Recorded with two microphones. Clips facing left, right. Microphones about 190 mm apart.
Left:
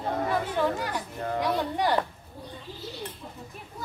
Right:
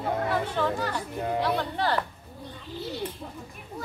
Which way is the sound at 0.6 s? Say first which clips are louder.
Even; 10° left (ahead or behind).